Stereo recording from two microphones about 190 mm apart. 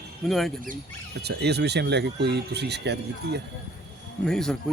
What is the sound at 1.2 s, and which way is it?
Speech, 60° right (ahead or behind).